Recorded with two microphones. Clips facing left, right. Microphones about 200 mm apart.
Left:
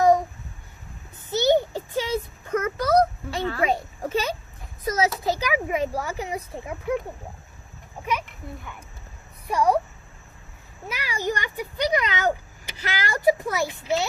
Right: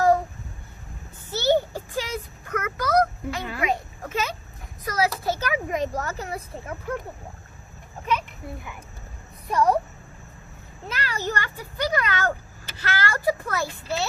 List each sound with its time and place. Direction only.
1.3 s a sound: 20° left (ahead or behind)
4.9 s speech: 20° left (ahead or behind)
9.5 s speech: 10° left (ahead or behind)
10.8 s a child's voice: 10° left (ahead or behind)